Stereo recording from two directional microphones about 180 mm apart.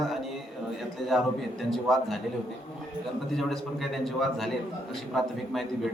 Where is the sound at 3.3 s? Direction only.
Centre (ahead or behind).